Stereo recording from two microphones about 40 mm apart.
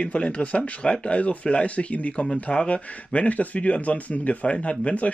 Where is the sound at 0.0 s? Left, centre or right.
Left.